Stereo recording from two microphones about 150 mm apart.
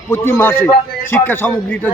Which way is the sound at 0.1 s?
15° left (ahead or behind).